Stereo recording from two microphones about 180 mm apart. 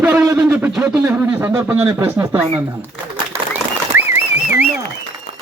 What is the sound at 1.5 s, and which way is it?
A man's voice, 10° right (ahead or behind).